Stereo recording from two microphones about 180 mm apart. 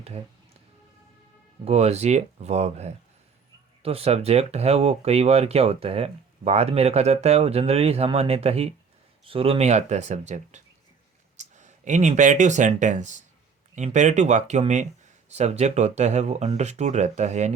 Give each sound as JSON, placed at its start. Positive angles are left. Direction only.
{"t": 1.6, "sound": "speech", "side_deg": -35}